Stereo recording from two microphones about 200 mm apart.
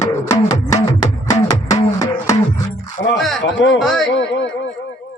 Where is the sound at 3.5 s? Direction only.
65° left (ahead or behind).